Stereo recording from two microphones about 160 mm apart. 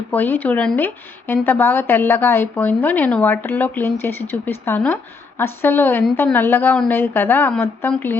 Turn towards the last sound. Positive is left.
turn(degrees=15)  # may be behind; listen again after turning